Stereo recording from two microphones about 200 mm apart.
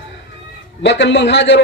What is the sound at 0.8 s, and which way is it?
Speech, 60° left (ahead or behind).